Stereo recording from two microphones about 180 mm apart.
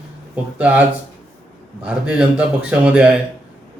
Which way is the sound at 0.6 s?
10° right (ahead or behind).